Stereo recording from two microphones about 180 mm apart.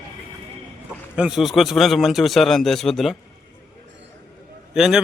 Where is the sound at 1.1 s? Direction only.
5° right (ahead or behind).